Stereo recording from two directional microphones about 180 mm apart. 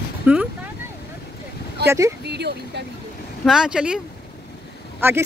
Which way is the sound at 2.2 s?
70° right (ahead or behind).